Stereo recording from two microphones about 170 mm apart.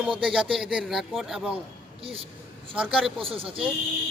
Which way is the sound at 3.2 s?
35° right (ahead or behind).